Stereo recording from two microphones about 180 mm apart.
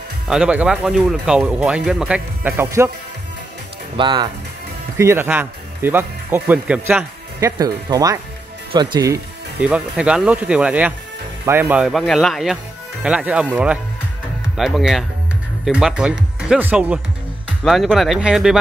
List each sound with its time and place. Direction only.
0.3 s speech: 5° right (ahead or behind)
3.9 s speech: 25° right (ahead or behind)
4.9 s speech: 15° right (ahead or behind)
7.3 s speech: 20° right (ahead or behind)
9.6 s speech: 5° right (ahead or behind)